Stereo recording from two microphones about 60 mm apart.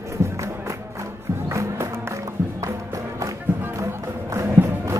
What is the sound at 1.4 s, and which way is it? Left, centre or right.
Music, right.